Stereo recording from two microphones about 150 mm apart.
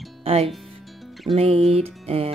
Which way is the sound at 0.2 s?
40° right (ahead or behind).